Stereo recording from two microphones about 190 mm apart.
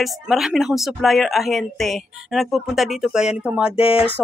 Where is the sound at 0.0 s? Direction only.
Centre (ahead or behind).